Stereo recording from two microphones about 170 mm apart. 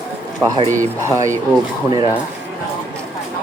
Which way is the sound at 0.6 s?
45° right (ahead or behind).